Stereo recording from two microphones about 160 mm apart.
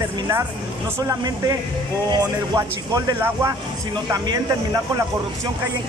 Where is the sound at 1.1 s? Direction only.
20° right (ahead or behind).